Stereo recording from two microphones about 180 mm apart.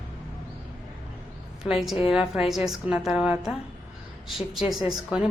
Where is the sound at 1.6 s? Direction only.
Centre (ahead or behind).